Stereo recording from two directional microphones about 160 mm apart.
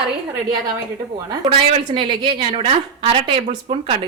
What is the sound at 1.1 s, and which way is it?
Speech, 30° right (ahead or behind).